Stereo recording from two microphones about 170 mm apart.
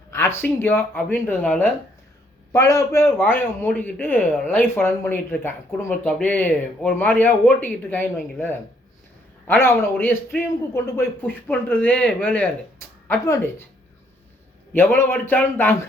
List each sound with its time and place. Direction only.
0.1 s a man's voice: 15° left (ahead or behind)
14.7 s a man's voice: 10° left (ahead or behind)